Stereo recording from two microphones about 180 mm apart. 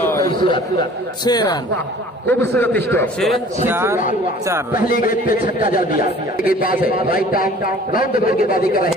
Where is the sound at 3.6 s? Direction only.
15° right (ahead or behind).